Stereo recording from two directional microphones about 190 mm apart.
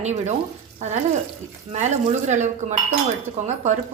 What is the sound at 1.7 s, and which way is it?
A woman's voice, 40° right (ahead or behind).